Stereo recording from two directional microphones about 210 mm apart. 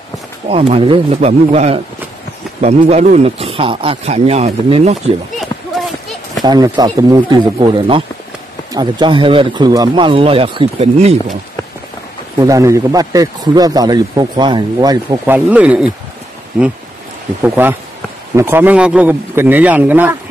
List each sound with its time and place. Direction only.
0.5 s speech: 25° right (ahead or behind)
6.4 s speech: 20° right (ahead or behind)
12.4 s speech: 15° right (ahead or behind)
15.3 s speech: 5° right (ahead or behind)
17.4 s speech: 10° right (ahead or behind)